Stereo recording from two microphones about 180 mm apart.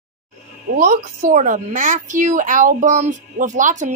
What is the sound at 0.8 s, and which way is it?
A woman's voice, 45° right (ahead or behind).